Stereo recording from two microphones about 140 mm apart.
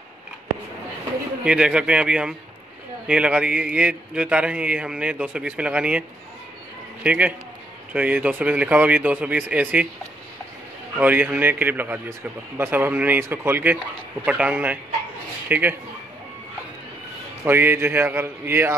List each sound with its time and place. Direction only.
1.4 s a man's voice: 5° right (ahead or behind)
11.0 s a man's voice: 15° right (ahead or behind)
17.5 s a man's voice: 15° right (ahead or behind)